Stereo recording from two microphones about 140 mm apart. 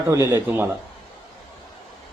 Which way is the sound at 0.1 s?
20° right (ahead or behind).